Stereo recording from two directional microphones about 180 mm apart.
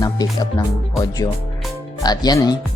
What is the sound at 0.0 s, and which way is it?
Speech, 20° left (ahead or behind).